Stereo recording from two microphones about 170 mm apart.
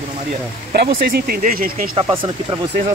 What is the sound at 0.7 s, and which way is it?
Speech, 65° right (ahead or behind).